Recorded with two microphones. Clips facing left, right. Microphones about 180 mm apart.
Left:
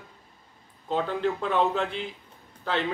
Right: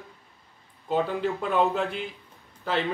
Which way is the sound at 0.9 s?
5° right (ahead or behind).